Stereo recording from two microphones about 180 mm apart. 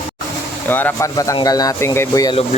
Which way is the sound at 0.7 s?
10° left (ahead or behind).